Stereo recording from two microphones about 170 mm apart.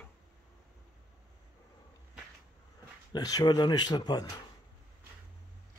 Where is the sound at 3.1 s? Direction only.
20° left (ahead or behind).